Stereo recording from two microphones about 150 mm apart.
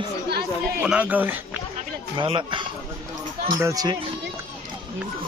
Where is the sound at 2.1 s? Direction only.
30° right (ahead or behind).